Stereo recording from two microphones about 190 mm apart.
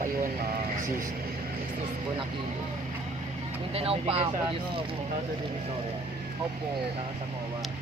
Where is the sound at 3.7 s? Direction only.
30° right (ahead or behind).